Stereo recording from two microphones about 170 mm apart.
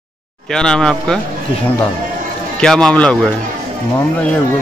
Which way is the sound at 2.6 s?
5° left (ahead or behind).